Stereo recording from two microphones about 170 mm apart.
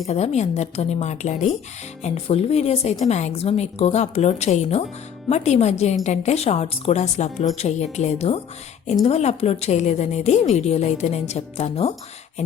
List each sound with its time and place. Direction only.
0.1 s speech: 40° left (ahead or behind)